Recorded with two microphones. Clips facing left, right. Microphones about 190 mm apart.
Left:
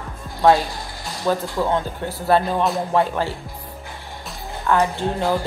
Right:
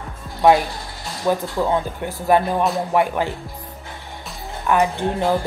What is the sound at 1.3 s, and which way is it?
Speech, 15° right (ahead or behind).